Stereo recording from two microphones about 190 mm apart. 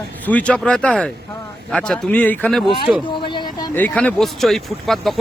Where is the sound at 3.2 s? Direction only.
25° left (ahead or behind).